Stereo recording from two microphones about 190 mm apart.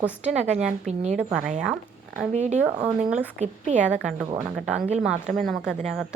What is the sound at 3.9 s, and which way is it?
Speech, 5° right (ahead or behind).